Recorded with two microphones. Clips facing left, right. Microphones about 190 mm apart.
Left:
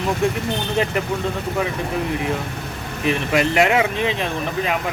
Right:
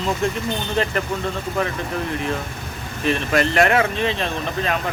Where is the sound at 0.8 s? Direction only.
15° left (ahead or behind).